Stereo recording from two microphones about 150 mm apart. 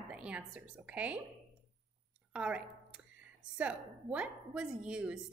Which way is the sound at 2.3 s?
5° right (ahead or behind).